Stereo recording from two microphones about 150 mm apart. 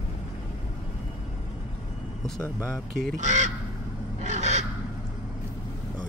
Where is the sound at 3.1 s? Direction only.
55° right (ahead or behind).